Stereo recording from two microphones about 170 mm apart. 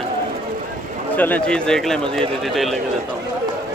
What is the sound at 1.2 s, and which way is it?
Speech, 10° left (ahead or behind).